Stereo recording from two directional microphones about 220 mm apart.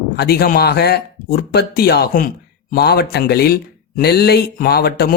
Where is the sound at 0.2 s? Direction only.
45° left (ahead or behind).